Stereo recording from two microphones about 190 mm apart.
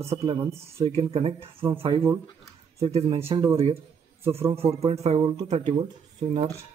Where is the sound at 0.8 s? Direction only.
30° right (ahead or behind).